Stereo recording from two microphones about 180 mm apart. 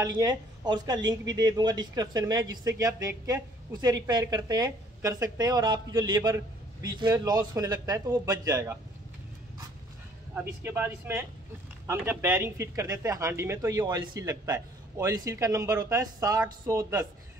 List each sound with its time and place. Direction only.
0.0 s speech: 20° right (ahead or behind)
10.6 s speech: 10° right (ahead or behind)